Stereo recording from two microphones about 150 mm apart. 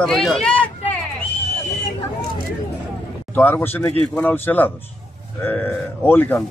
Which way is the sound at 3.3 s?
10° left (ahead or behind).